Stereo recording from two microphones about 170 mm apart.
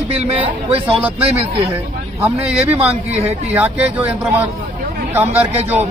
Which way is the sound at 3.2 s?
40° right (ahead or behind).